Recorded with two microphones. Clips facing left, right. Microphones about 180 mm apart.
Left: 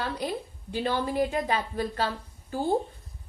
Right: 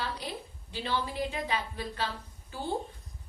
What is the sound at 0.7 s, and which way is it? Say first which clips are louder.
A woman's voice: left 6 dB; 50° left (ahead or behind).